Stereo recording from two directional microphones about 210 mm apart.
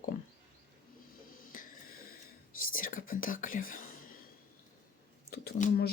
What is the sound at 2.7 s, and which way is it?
Speech, 40° left (ahead or behind).